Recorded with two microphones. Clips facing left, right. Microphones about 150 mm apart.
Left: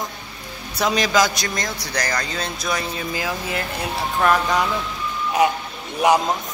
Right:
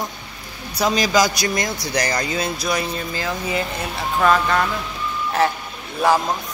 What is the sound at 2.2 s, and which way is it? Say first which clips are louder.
Speech: right 4 dB; 10° right (ahead or behind).